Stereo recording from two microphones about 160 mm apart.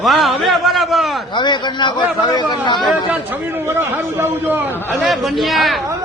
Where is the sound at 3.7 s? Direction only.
15° right (ahead or behind).